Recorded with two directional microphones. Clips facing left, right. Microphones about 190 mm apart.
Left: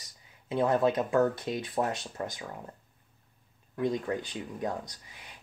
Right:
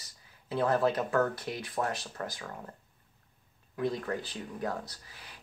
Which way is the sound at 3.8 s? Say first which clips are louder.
Left 2 dB; 15° left (ahead or behind).